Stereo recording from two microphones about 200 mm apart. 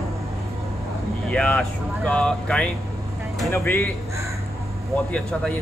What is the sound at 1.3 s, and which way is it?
Speech, 5° left (ahead or behind).